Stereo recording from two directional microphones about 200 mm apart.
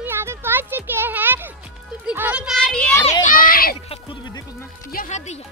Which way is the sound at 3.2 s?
45° left (ahead or behind).